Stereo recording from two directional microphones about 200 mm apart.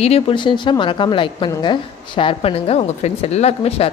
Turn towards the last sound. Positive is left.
turn(degrees=30)  # may be behind; listen again after turning